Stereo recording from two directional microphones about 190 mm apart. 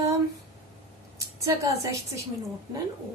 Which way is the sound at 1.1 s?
15° right (ahead or behind).